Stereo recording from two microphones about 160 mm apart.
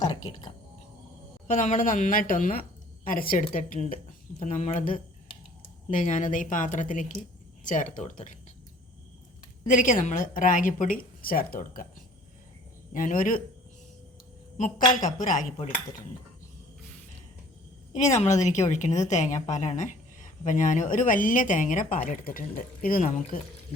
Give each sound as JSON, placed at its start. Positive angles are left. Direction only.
{"t": 0.0, "sound": "music", "side_deg": 25}
{"t": 1.5, "sound": "a woman's voice", "side_deg": 55}
{"t": 9.6, "sound": "a woman's voice", "side_deg": 55}
{"t": 12.9, "sound": "a woman's voice", "side_deg": 55}
{"t": 14.6, "sound": "a woman's voice", "side_deg": 55}
{"t": 17.9, "sound": "a woman's voice", "side_deg": 45}